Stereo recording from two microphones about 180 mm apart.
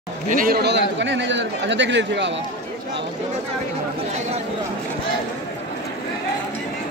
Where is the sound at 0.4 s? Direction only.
60° right (ahead or behind); by 2.3 s 80° right.